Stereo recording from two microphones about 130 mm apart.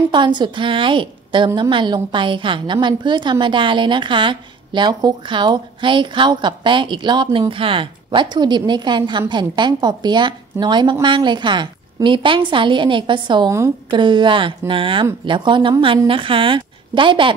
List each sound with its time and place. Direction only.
0.1 s a woman's voice: 35° right (ahead or behind)